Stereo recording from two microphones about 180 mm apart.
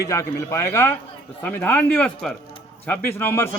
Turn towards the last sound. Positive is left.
turn(degrees=10)  # may be behind; listen again after turning